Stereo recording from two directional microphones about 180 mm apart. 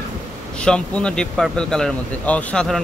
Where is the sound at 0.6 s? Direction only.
5° left (ahead or behind).